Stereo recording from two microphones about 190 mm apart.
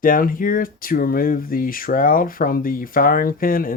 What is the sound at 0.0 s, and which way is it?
Speech, 45° left (ahead or behind).